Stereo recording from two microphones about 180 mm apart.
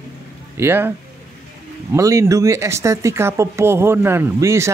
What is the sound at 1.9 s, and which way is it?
Speech, 15° right (ahead or behind).